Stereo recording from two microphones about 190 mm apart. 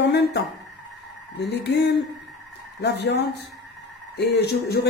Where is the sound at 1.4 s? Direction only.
60° left (ahead or behind).